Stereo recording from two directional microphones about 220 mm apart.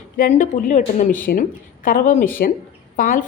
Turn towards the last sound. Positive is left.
turn(degrees=40)  # may be behind; listen again after turning